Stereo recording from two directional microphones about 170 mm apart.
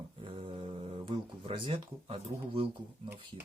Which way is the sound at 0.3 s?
30° right (ahead or behind).